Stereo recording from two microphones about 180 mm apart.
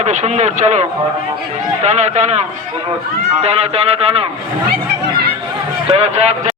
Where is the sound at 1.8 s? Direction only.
40° right (ahead or behind).